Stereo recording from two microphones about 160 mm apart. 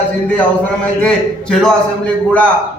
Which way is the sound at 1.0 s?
5° left (ahead or behind).